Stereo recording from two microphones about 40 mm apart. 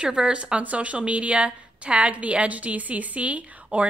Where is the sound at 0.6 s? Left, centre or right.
Right.